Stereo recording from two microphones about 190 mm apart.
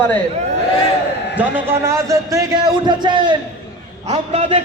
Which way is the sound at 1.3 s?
15° right (ahead or behind).